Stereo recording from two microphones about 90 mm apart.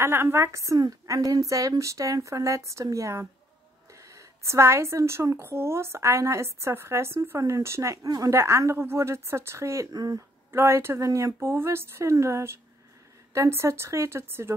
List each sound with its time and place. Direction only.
0.0 s a woman's voice: 25° right (ahead or behind)
9.9 s speech: 45° right (ahead or behind)
10.5 s a woman's voice: 30° right (ahead or behind)